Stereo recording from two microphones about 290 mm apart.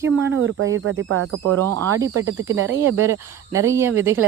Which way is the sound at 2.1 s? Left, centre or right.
Right.